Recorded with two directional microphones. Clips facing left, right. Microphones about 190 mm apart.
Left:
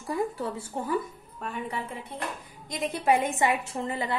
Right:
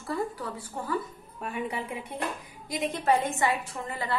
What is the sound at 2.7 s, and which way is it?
Speech, centre (ahead or behind).